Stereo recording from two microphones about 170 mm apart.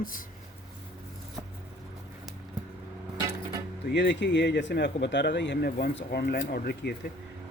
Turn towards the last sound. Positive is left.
turn(degrees=80)